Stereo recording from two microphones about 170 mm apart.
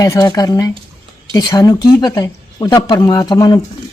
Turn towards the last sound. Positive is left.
turn(degrees=20)  # may be behind; listen again after turning